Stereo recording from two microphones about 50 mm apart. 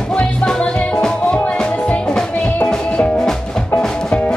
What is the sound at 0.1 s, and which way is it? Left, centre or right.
Music, centre.